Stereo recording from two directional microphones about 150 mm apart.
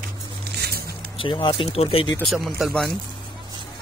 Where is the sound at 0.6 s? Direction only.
90° right.